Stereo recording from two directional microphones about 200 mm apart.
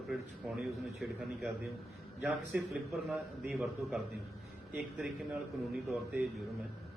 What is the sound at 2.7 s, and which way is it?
A man's voice, centre (ahead or behind).